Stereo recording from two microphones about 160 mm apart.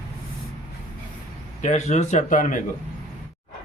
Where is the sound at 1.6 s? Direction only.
45° left (ahead or behind).